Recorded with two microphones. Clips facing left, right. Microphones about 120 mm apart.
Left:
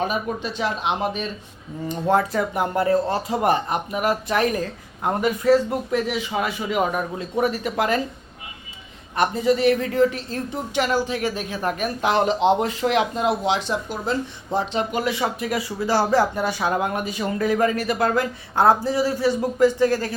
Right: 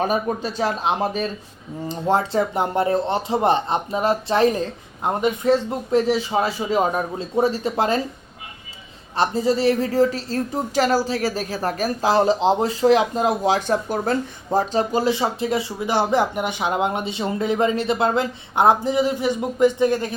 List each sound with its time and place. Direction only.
0.0 s a woman's voice: 40° right (ahead or behind)
9.1 s a woman's voice: 30° right (ahead or behind)